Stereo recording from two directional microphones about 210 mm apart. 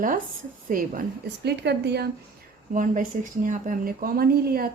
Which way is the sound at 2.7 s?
40° right (ahead or behind).